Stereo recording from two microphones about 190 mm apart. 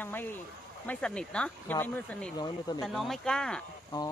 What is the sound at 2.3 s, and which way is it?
Speech, 20° left (ahead or behind).